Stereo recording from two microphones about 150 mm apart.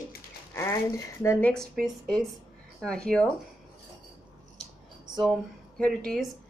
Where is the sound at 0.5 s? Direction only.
20° left (ahead or behind).